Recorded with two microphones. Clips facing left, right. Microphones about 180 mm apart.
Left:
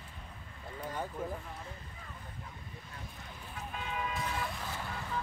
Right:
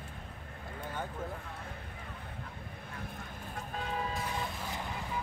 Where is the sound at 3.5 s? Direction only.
40° right (ahead or behind).